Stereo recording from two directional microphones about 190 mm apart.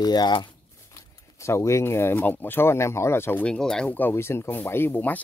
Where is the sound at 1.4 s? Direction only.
15° left (ahead or behind).